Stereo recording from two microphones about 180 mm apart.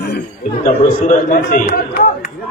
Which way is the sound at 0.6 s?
45° left (ahead or behind).